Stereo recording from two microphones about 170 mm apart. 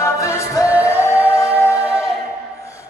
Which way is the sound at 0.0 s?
15° left (ahead or behind).